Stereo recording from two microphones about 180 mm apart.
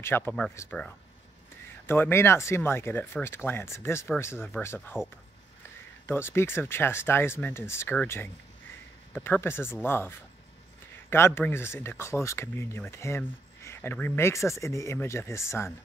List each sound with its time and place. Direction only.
0.0 s speech: 10° left (ahead or behind)
6.0 s speech: 15° left (ahead or behind)